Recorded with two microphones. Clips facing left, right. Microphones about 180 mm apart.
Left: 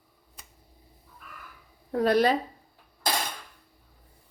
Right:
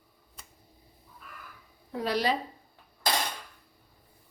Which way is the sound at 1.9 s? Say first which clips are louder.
Left 7 dB; 50° left (ahead or behind).